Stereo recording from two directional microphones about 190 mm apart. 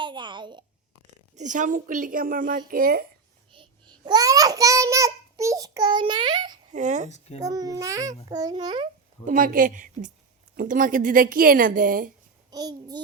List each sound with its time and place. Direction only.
0.0 s babbling: 25° right (ahead or behind)
1.4 s a woman's voice: 40° right (ahead or behind)
3.5 s a child's voice: 25° right (ahead or behind)
6.7 s speech: 40° right (ahead or behind)
7.4 s a child's voice: 20° right (ahead or behind)
9.2 s a woman's voice: 45° right (ahead or behind)
12.5 s a child's voice: 20° right (ahead or behind)